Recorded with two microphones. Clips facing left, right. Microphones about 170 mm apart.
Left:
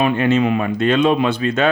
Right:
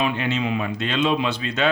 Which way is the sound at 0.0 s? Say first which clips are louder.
Left 8 dB; 50° left (ahead or behind).